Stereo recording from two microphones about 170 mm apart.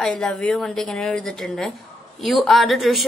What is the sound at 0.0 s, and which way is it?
Speech, 5° left (ahead or behind).